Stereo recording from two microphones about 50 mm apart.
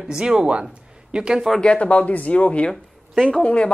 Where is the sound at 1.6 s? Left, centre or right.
Left.